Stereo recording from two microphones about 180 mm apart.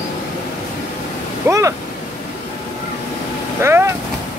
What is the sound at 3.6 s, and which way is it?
Vehicle, 15° right (ahead or behind).